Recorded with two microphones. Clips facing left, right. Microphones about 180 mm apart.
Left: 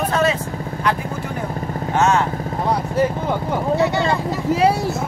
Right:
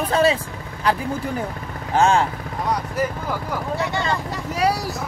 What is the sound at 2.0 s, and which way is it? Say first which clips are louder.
Speech: even; 30° right (ahead or behind).